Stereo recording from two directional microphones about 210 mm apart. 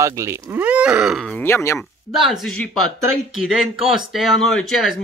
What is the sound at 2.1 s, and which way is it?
Speech, centre (ahead or behind).